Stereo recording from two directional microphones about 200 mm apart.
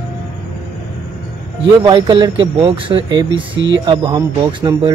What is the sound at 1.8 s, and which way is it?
Speech, 20° right (ahead or behind).